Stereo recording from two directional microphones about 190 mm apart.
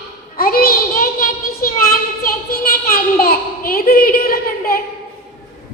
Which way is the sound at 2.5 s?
50° left (ahead or behind).